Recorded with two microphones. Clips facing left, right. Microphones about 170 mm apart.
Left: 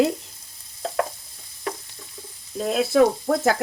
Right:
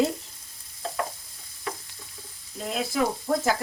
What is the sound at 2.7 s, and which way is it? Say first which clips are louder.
Speech: left 8 dB; 75° left (ahead or behind).